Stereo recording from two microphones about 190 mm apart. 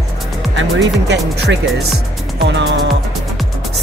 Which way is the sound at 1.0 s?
70° right (ahead or behind).